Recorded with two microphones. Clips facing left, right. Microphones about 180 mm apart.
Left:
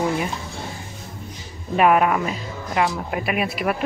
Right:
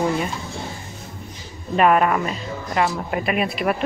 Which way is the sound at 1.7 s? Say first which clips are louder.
Even; 10° left (ahead or behind).